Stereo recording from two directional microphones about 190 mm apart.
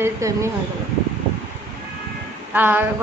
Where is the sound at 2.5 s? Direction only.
10° right (ahead or behind).